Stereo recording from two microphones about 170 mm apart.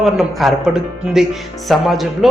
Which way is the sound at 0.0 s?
Centre (ahead or behind).